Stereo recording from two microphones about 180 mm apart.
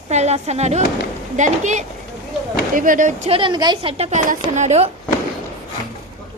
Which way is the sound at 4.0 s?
40° right (ahead or behind).